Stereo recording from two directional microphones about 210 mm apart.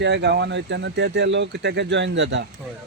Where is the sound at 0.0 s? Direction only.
55° right (ahead or behind).